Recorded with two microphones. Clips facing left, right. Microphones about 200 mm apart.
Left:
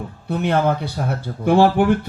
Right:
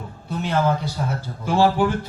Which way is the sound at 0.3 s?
60° left (ahead or behind).